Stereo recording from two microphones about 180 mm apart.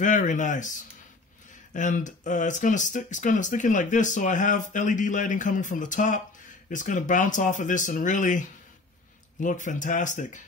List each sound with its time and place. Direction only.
0.0 s speech: 45° left (ahead or behind)